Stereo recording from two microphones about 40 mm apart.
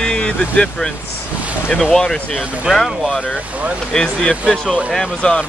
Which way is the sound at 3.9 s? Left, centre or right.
Left.